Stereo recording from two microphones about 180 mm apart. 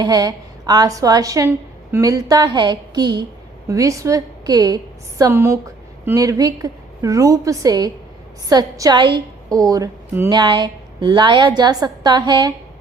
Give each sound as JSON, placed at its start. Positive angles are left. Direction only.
{"t": 0.0, "sound": "a woman's voice", "side_deg": -20}